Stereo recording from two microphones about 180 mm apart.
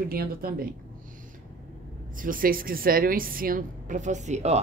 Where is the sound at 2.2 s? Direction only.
50° right (ahead or behind).